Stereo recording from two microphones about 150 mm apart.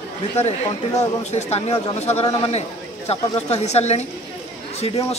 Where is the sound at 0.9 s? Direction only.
45° left (ahead or behind).